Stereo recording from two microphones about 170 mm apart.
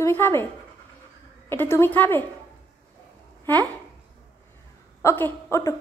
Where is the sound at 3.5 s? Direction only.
10° left (ahead or behind).